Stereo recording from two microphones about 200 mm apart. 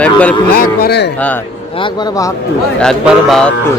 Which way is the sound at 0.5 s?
50° left (ahead or behind).